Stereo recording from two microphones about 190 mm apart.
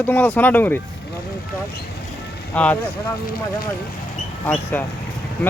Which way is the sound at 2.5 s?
10° left (ahead or behind).